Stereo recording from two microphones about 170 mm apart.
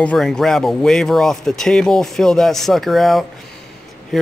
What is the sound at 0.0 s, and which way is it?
Speech, 5° left (ahead or behind).